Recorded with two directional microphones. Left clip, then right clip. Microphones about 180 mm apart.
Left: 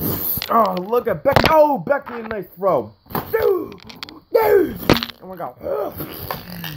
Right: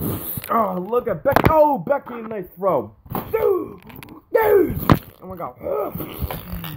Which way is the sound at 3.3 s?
Centre (ahead or behind).